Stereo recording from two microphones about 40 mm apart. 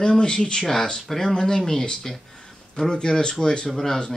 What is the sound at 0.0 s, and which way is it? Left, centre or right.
Speech, centre.